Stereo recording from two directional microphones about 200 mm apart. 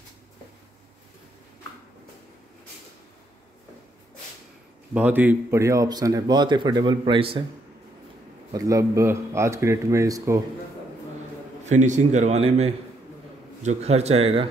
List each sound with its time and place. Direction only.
4.9 s speech: 10° right (ahead or behind); by 7.4 s 25° right (ahead or behind)
8.5 s speech: 15° right (ahead or behind)
11.6 s a man's voice: 35° right (ahead or behind)